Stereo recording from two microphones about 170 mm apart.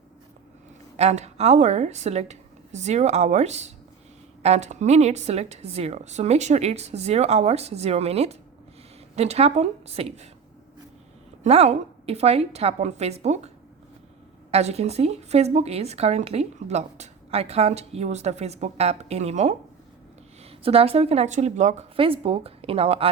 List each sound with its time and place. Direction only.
0.9 s speech: 40° right (ahead or behind)
11.4 s speech: 40° right (ahead or behind)
14.5 s speech: 40° right (ahead or behind)